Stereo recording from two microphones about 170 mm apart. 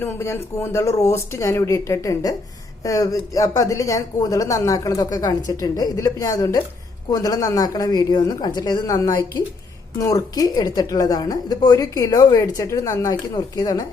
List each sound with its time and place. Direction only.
0.0 s a woman's voice: 15° left (ahead or behind)